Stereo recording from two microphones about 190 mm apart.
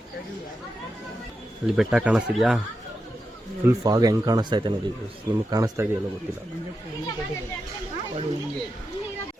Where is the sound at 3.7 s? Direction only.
20° right (ahead or behind).